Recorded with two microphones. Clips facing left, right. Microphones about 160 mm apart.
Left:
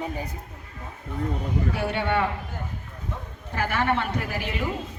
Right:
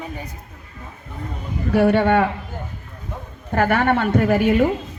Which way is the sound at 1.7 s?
55° right (ahead or behind).